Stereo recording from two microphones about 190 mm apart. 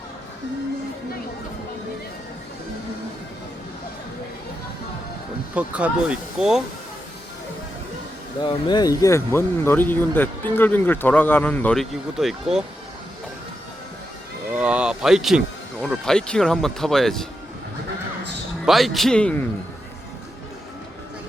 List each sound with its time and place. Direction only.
5.5 s speech: 5° right (ahead or behind)
8.4 s speech: 25° left (ahead or behind); by 12.6 s centre (ahead or behind)
14.5 s speech: 5° right (ahead or behind)
18.6 s speech: centre (ahead or behind)